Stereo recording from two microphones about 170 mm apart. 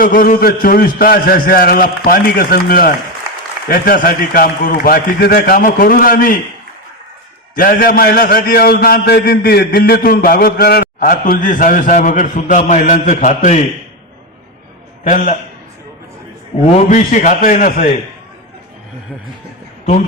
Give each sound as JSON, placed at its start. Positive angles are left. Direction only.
{"t": 0.0, "sound": "a man's voice", "side_deg": 55}
{"t": 7.5, "sound": "a man's voice", "side_deg": 60}
{"t": 15.0, "sound": "a man's voice", "side_deg": 50}
{"t": 16.6, "sound": "a man's voice", "side_deg": 45}